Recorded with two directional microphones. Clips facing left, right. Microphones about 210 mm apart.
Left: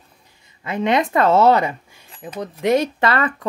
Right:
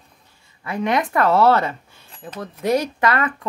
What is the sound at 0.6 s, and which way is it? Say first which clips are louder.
Speech: left 2 dB; 20° left (ahead or behind).